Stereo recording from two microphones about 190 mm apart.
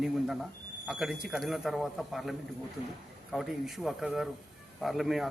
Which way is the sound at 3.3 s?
Centre (ahead or behind).